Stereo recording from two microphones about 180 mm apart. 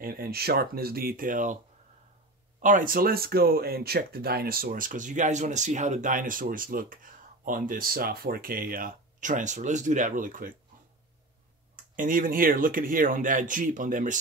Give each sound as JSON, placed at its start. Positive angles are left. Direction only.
{"t": 0.0, "sound": "speech", "side_deg": -55}
{"t": 2.6, "sound": "speech", "side_deg": -50}
{"t": 11.7, "sound": "speech", "side_deg": -50}